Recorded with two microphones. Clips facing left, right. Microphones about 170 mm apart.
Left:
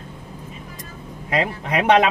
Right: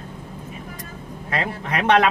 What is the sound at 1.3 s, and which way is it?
Speech, 15° left (ahead or behind).